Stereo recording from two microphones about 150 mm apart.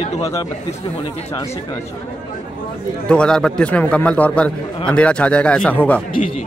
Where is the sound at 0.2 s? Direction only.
20° left (ahead or behind).